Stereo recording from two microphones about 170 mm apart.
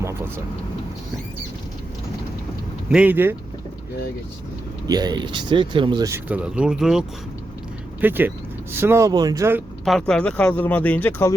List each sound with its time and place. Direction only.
2.9 s speech: 10° right (ahead or behind)
4.9 s speech: 25° right (ahead or behind)
6.1 s speech: 10° right (ahead or behind)
8.0 s speech: 10° right (ahead or behind)
9.8 s speech: 5° left (ahead or behind)